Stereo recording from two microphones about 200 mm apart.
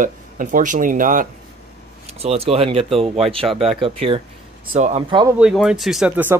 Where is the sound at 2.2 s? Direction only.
30° right (ahead or behind).